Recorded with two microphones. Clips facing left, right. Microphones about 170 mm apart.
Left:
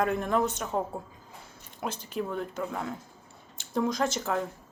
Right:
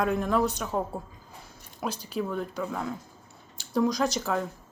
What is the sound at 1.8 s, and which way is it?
Speech, 20° left (ahead or behind).